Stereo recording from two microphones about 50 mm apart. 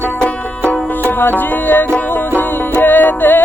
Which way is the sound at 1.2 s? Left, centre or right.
Left.